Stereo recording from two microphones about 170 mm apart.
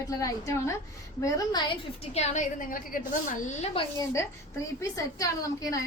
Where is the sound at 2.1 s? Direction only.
45° left (ahead or behind).